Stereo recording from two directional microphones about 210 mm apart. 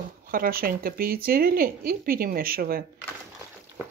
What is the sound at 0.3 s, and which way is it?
Speech, 45° right (ahead or behind).